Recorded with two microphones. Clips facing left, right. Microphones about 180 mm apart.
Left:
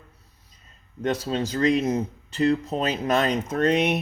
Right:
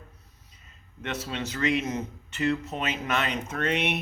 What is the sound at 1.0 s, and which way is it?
Speech, 35° left (ahead or behind).